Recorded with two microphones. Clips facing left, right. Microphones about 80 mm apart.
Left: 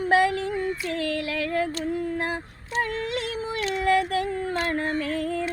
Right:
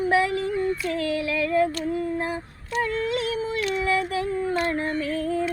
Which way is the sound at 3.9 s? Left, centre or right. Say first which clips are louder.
Left 1 dB; left.